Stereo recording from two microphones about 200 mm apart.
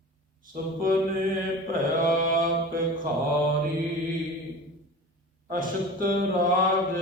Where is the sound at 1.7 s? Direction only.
45° right (ahead or behind).